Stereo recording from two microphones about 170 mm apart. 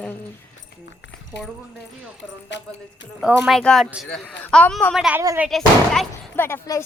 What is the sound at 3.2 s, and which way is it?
Speech, 5° right (ahead or behind).